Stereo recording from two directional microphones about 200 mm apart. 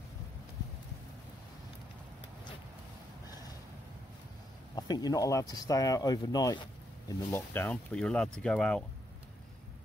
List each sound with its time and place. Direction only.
4.7 s speech: 20° left (ahead or behind); by 8.8 s 5° left (ahead or behind)